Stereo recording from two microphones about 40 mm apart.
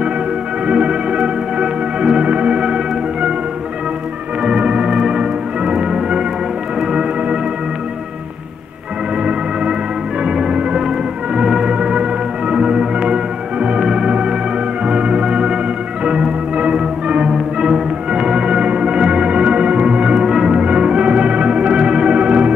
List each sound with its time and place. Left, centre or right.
0.7 s music: right
4.4 s organ: right
4.9 s music: right
6.9 s organ: right
10.2 s music: centre
14.9 s organ: right
17.3 s music: centre
20.8 s organ: right